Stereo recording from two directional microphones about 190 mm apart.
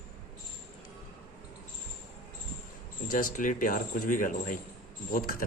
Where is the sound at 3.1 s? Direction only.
45° left (ahead or behind).